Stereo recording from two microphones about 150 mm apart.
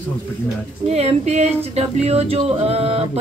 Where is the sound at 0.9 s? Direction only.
45° right (ahead or behind).